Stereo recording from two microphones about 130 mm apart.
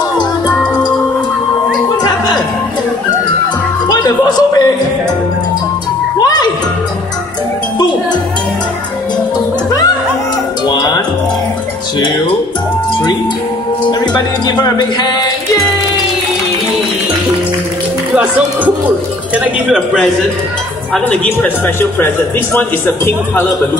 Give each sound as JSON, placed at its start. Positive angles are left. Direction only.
{"t": 3.9, "sound": "a sound", "side_deg": 30}
{"t": 6.2, "sound": "music", "side_deg": 30}
{"t": 10.7, "sound": "music", "side_deg": 35}
{"t": 13.8, "sound": "music", "side_deg": 35}
{"t": 19.3, "sound": "speech", "side_deg": -10}
{"t": 20.9, "sound": "speech", "side_deg": 10}
{"t": 22.6, "sound": "speech", "side_deg": 20}